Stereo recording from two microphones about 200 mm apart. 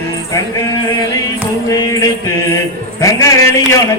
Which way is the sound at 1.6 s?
15° left (ahead or behind).